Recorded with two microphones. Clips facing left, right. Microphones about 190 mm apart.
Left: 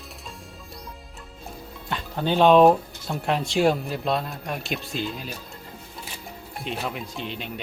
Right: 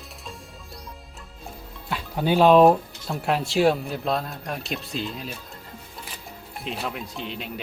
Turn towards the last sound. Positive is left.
turn(degrees=0)  # may be behind; listen again after turning